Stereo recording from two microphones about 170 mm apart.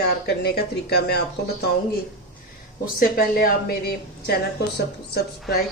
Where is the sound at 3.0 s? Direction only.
60° left (ahead or behind).